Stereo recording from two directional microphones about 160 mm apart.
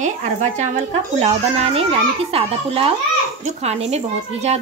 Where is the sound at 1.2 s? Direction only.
45° right (ahead or behind).